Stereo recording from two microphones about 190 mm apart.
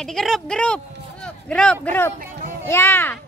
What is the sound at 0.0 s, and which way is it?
A child's voice, centre (ahead or behind).